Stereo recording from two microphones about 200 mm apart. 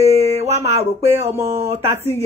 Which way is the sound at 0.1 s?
30° right (ahead or behind).